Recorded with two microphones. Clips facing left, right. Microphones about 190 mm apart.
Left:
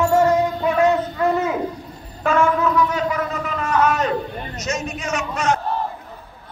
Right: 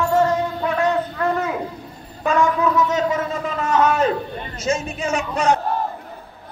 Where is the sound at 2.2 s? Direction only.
15° right (ahead or behind).